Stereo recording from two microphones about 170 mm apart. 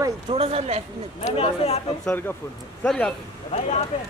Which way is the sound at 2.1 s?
10° left (ahead or behind).